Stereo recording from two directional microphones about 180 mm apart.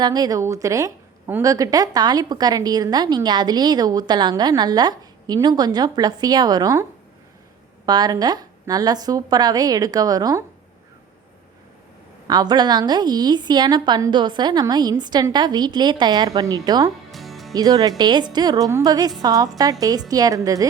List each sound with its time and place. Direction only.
0.0 s a woman's voice: 20° right (ahead or behind)
7.9 s a woman's voice: 25° right (ahead or behind)
12.3 s a woman's voice: 25° right (ahead or behind)
17.1 s music: centre (ahead or behind)
17.5 s a woman's voice: 20° right (ahead or behind)